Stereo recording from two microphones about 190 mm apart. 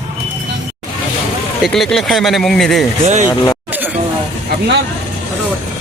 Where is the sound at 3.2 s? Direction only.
15° left (ahead or behind).